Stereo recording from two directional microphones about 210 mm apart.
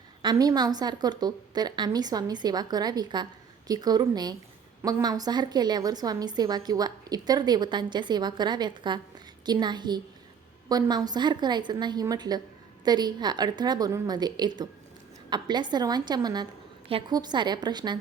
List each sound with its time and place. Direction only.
0.2 s a woman's voice: 20° right (ahead or behind)